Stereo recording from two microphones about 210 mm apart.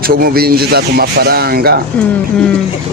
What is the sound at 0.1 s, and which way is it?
Speech, 45° right (ahead or behind).